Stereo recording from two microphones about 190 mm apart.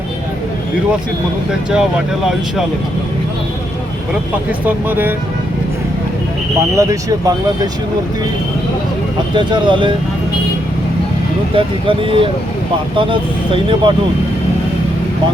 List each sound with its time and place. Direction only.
1.7 s speech: 5° right (ahead or behind)
4.6 s speech: 10° right (ahead or behind)
6.7 s speech: 20° right (ahead or behind)
9.3 s speech: 25° right (ahead or behind)
11.5 s speech: 30° right (ahead or behind)